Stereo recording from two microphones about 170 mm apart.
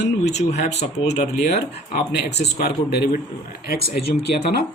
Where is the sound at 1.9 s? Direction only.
75° left (ahead or behind).